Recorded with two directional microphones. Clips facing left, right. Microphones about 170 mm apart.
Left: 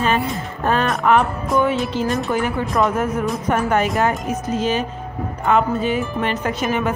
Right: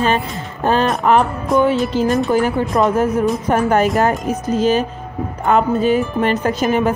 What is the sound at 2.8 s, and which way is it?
Speech, 25° right (ahead or behind).